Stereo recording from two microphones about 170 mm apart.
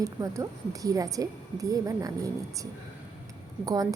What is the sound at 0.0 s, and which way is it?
A woman's voice, 20° right (ahead or behind).